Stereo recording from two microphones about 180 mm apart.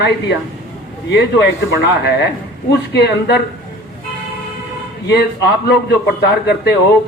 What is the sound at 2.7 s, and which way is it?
Speech, 70° left (ahead or behind).